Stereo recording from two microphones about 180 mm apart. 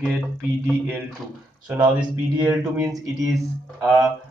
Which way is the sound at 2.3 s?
15° right (ahead or behind).